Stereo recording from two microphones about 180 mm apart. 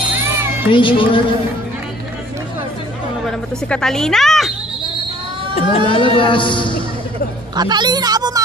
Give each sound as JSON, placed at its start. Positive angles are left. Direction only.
{"t": 0.7, "sound": "speech", "side_deg": 25}
{"t": 3.3, "sound": "speech", "side_deg": 5}
{"t": 5.6, "sound": "speech", "side_deg": 35}
{"t": 7.5, "sound": "a woman's voice", "side_deg": -25}